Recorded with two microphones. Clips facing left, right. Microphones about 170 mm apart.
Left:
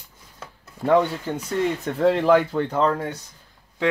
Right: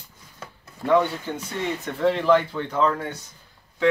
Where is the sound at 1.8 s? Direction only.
40° left (ahead or behind).